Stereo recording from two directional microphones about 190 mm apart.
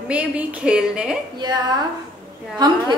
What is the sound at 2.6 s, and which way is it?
Speech, 20° right (ahead or behind).